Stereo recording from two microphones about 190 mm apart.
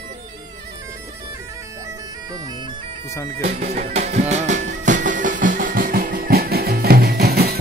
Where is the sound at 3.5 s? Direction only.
45° right (ahead or behind).